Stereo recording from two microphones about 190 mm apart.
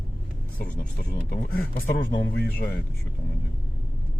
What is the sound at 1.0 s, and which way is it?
Speech, 55° left (ahead or behind).